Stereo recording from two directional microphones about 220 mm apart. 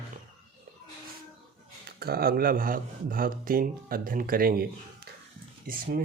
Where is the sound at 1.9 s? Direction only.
45° right (ahead or behind).